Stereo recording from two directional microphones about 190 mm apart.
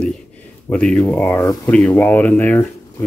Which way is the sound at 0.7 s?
5° left (ahead or behind).